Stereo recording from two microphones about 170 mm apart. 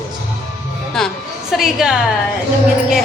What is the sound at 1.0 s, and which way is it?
A woman's voice, centre (ahead or behind).